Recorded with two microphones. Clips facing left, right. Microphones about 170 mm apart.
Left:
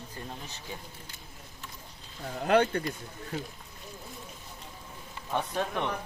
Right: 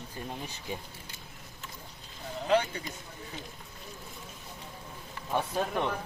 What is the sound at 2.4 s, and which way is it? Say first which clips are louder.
Speech: left 3 dB; 60° left (ahead or behind).